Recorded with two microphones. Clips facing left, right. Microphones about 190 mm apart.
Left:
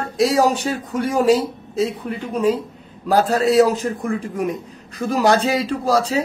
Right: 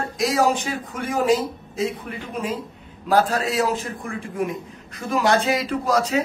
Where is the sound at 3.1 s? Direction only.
35° left (ahead or behind).